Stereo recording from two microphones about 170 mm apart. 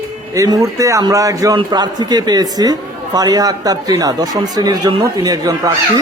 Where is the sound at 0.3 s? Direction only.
20° right (ahead or behind).